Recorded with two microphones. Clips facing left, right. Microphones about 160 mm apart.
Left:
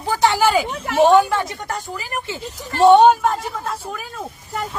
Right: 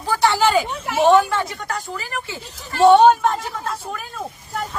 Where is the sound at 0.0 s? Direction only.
15° left (ahead or behind).